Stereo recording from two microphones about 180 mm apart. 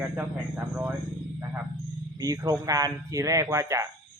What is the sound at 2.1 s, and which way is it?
Speech, 20° right (ahead or behind).